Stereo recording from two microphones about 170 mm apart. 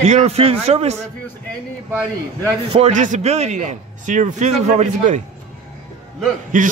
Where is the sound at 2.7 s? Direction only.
45° right (ahead or behind).